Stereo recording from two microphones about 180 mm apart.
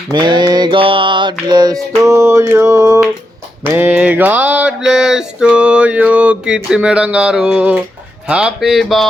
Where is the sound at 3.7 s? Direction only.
10° right (ahead or behind).